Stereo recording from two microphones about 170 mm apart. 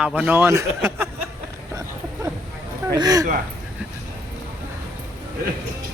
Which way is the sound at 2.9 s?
20° right (ahead or behind).